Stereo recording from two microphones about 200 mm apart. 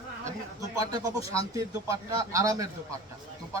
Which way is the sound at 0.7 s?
15° right (ahead or behind).